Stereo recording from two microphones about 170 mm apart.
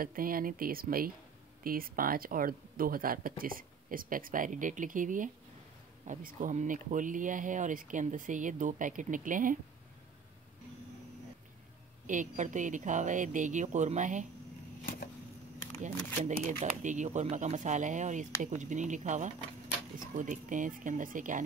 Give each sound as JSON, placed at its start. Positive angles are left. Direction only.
{"t": 0.0, "sound": "speech", "side_deg": -55}
{"t": 12.1, "sound": "speech", "side_deg": -50}
{"t": 15.8, "sound": "speech", "side_deg": -45}